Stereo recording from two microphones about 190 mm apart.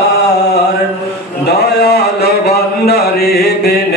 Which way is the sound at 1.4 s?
60° left (ahead or behind).